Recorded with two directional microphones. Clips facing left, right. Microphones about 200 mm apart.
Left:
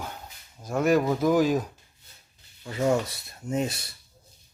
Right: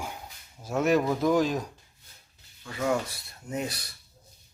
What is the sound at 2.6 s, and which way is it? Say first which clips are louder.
Speech: left 4 dB; 25° left (ahead or behind).